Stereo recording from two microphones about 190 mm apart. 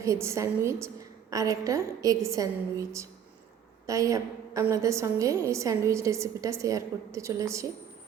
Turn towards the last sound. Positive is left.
turn(degrees=-15)  # may be behind; listen again after turning